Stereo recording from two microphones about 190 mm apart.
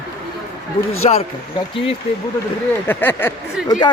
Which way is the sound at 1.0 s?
30° left (ahead or behind).